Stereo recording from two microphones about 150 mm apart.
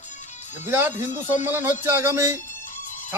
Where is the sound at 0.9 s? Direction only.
55° left (ahead or behind).